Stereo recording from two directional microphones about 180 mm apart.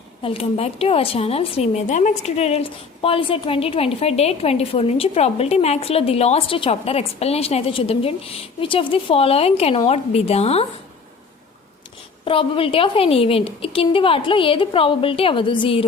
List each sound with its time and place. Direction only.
0.2 s a woman's voice: 30° left (ahead or behind)
12.2 s a woman's voice: 30° left (ahead or behind)